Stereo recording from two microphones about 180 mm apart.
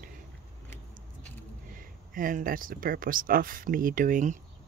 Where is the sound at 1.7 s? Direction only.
50° right (ahead or behind).